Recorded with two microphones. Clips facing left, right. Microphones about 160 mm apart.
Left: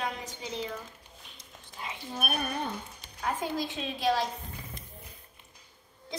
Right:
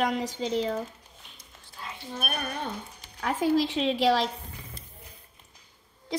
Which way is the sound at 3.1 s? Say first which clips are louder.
Right 7 dB; 75° right (ahead or behind).